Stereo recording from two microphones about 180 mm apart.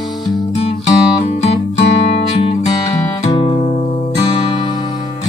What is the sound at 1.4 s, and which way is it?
Music, 35° left (ahead or behind).